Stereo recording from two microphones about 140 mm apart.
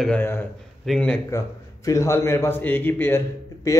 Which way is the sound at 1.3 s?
20° left (ahead or behind).